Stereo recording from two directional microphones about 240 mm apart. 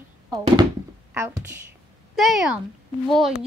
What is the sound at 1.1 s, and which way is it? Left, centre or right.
Speech, centre.